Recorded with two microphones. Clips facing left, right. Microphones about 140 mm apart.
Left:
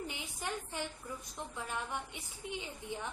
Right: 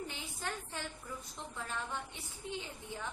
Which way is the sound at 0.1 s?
15° left (ahead or behind).